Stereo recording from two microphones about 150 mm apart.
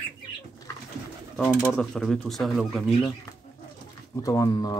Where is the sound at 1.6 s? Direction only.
10° left (ahead or behind).